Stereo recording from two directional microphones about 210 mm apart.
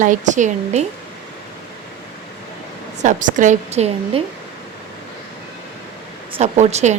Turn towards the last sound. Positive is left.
turn(degrees=-30)  # may be behind; listen again after turning